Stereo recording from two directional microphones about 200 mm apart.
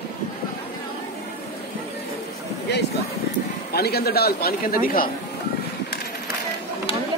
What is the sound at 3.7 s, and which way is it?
A man's voice, 50° left (ahead or behind).